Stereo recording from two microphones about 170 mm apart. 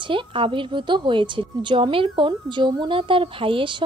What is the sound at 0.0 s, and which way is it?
A woman's voice, 30° right (ahead or behind).